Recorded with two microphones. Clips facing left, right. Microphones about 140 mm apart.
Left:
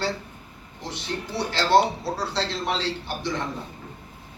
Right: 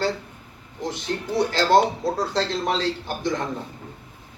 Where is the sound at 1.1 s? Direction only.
40° right (ahead or behind).